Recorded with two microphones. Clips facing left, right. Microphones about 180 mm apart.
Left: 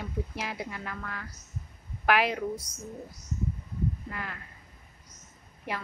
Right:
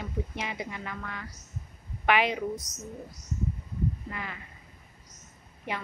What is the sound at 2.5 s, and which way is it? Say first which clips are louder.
Speech: right 1 dB; 30° left (ahead or behind).